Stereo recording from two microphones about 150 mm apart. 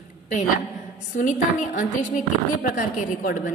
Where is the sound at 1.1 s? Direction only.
55° left (ahead or behind).